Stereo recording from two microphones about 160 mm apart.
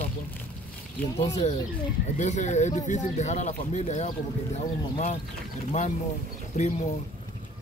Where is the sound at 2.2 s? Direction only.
45° left (ahead or behind).